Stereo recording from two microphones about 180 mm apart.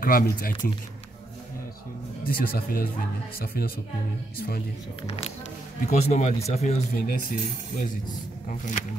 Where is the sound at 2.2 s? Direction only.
50° left (ahead or behind).